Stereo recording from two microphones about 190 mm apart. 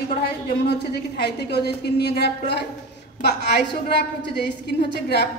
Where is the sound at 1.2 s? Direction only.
60° left (ahead or behind).